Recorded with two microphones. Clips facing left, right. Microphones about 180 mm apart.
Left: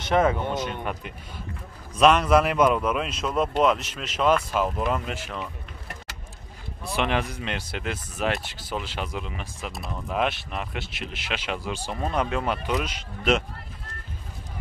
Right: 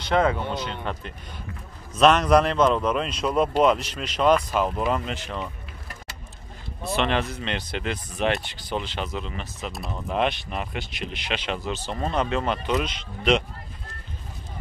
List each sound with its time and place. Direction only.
0.0 s speech: 20° left (ahead or behind); by 5.5 s 5° left (ahead or behind)
6.8 s speech: 10° left (ahead or behind)